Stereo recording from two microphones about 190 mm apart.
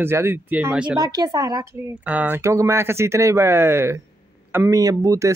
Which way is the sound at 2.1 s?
10° right (ahead or behind).